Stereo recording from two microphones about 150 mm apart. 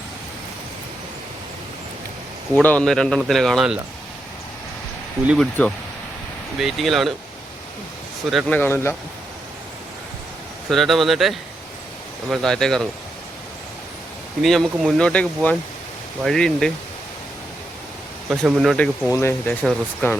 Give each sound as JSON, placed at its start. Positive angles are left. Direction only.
{"t": 2.6, "sound": "a man's voice", "side_deg": 10}
{"t": 5.4, "sound": "speech", "side_deg": 10}
{"t": 6.6, "sound": "a man's voice", "side_deg": 0}
{"t": 8.3, "sound": "a man's voice", "side_deg": 0}
{"t": 8.5, "sound": "speech", "side_deg": 15}
{"t": 10.7, "sound": "a man's voice", "side_deg": 0}
{"t": 14.4, "sound": "a man's voice", "side_deg": 0}
{"t": 18.3, "sound": "a man's voice", "side_deg": -5}
{"t": 19.1, "sound": "speech", "side_deg": 15}